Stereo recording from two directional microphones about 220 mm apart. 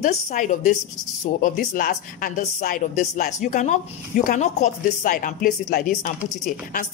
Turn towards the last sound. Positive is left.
turn(degrees=35)  # may be behind; listen again after turning